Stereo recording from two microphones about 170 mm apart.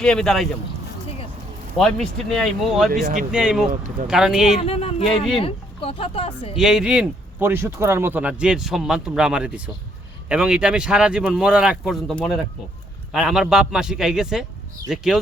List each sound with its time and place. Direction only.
0.0 s speech: 5° left (ahead or behind)
1.8 s speech: centre (ahead or behind)
2.9 s speech: 45° right (ahead or behind)
3.3 s speech: 5° right (ahead or behind)
4.6 s speech: 35° left (ahead or behind)
6.6 s speech: 5° right (ahead or behind)